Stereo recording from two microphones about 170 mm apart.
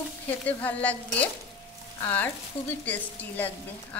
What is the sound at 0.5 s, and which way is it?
Speech, 10° left (ahead or behind).